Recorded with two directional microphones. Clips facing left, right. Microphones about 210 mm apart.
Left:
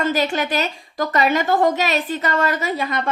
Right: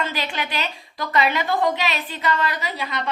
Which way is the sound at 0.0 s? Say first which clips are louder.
Left 7 dB; 45° left (ahead or behind).